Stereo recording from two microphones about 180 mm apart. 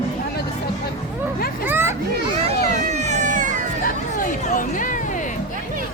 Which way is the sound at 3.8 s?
50° left (ahead or behind).